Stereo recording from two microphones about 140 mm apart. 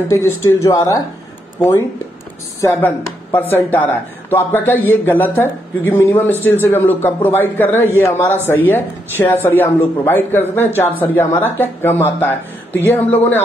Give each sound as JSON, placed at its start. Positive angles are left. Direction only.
{"t": 0.1, "sound": "a woman's voice", "side_deg": 20}